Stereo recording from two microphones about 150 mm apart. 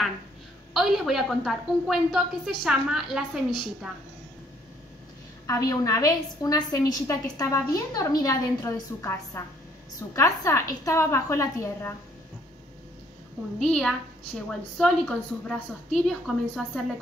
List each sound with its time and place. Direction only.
0.7 s a woman's voice: centre (ahead or behind)
5.5 s a woman's voice: 20° left (ahead or behind)
13.6 s a woman's voice: 5° left (ahead or behind)